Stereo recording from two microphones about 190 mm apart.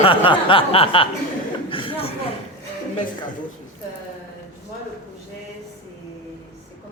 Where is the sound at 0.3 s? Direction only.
25° left (ahead or behind).